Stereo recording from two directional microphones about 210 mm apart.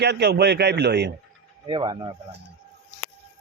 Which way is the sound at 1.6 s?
25° right (ahead or behind).